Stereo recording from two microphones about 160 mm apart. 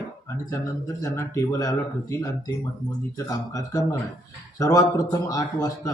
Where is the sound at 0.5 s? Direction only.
20° left (ahead or behind).